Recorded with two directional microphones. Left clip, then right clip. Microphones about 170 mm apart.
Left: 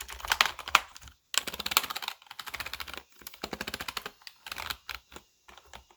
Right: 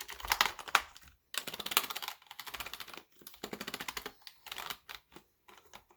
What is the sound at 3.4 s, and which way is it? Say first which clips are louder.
Typing: left 5 dB; 20° left (ahead or behind).